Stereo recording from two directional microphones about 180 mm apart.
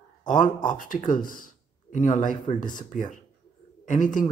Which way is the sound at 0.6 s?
50° left (ahead or behind).